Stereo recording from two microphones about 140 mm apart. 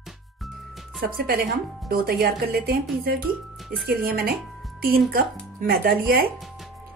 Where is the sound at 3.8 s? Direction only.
90° right.